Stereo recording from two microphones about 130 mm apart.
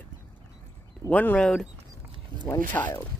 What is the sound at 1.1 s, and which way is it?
Speech, 10° left (ahead or behind).